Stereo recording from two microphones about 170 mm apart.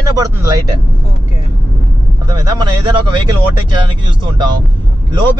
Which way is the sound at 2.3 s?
25° right (ahead or behind).